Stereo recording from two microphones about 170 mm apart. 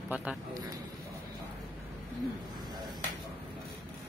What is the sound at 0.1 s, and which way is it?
Speech, 10° right (ahead or behind).